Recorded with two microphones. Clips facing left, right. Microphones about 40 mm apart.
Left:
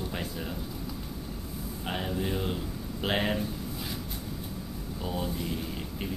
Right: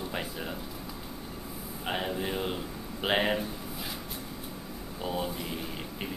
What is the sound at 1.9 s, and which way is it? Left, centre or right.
Speech, centre.